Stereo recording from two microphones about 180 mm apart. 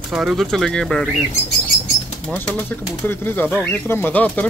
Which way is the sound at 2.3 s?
10° left (ahead or behind).